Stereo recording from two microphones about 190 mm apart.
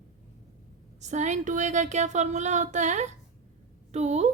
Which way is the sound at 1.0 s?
40° right (ahead or behind).